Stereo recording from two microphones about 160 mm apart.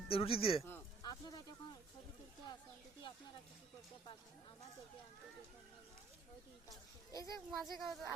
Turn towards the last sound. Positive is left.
turn(degrees=0)  # may be behind; listen again after turning